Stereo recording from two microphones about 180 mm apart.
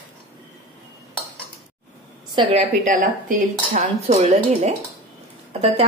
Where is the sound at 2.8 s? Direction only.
45° right (ahead or behind).